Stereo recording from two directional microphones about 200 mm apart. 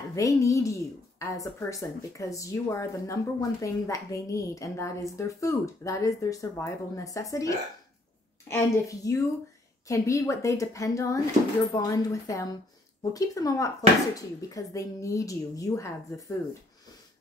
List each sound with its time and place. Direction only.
0.1 s a woman's voice: 15° left (ahead or behind)